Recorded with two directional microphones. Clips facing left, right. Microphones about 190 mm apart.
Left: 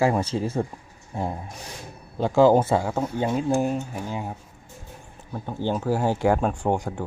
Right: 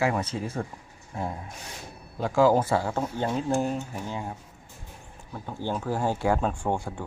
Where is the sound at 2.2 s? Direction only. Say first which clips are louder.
Left 4 dB; 25° left (ahead or behind).